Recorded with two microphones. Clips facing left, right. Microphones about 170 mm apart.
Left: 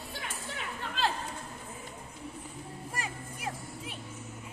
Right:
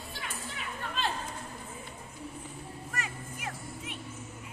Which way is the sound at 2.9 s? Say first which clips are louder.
Even; 35° left (ahead or behind).